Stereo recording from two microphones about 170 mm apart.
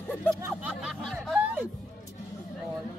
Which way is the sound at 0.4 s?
10° right (ahead or behind).